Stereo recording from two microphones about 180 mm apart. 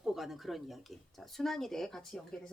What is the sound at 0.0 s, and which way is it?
Speech, centre (ahead or behind).